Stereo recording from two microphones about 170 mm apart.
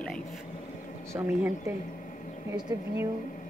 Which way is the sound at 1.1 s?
15° right (ahead or behind).